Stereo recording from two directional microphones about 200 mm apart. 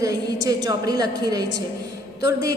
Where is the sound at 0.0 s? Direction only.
20° right (ahead or behind).